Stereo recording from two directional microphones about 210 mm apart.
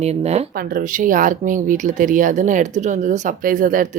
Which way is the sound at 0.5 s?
45° right (ahead or behind).